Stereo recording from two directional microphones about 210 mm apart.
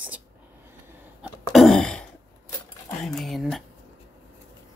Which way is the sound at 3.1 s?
Centre (ahead or behind).